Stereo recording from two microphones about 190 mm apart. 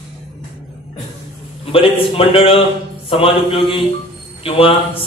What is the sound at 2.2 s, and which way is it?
A man's voice, 30° left (ahead or behind).